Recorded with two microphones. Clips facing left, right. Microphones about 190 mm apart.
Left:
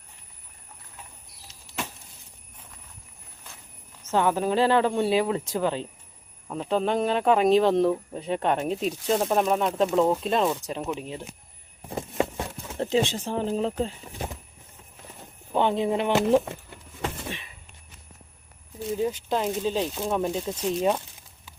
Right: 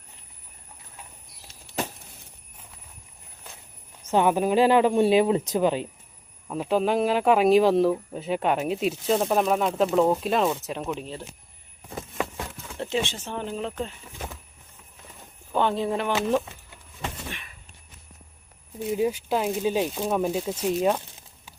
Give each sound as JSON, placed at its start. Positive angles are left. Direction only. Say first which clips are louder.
{"t": 4.0, "sound": "speech", "louder": "right 2 dB", "side_deg": -15}
{"t": 11.9, "sound": "a sound", "louder": "left 4 dB", "side_deg": 25}
{"t": 12.8, "sound": "speech", "louder": "left 4 dB", "side_deg": 35}
{"t": 15.5, "sound": "speech", "louder": "left 1 dB", "side_deg": 20}
{"t": 18.9, "sound": "speech", "louder": "right 2 dB", "side_deg": -10}